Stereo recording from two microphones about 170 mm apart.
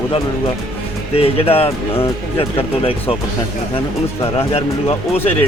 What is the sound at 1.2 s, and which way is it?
Speech, 35° left (ahead or behind).